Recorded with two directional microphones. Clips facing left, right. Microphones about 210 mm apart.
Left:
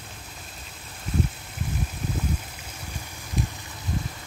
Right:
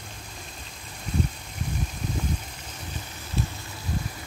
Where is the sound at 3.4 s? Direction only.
15° left (ahead or behind).